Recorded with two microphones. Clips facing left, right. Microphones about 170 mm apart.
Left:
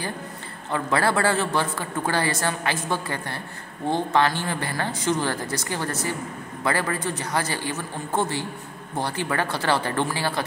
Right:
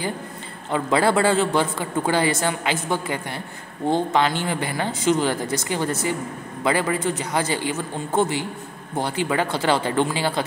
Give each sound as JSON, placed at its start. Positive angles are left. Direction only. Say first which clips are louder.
{"t": 0.7, "sound": "a man's voice", "louder": "right 3 dB", "side_deg": -20}